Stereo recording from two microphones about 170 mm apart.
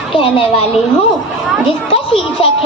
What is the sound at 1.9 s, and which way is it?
Speech, 35° left (ahead or behind).